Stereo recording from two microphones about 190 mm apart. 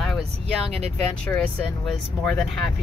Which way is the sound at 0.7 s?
35° right (ahead or behind).